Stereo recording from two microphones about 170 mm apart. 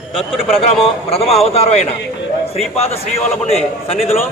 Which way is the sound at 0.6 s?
35° left (ahead or behind).